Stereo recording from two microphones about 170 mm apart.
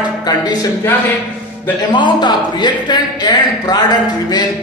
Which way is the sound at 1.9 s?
25° left (ahead or behind).